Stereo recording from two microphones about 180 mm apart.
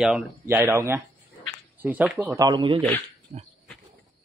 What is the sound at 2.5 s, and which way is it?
Speech, 25° right (ahead or behind).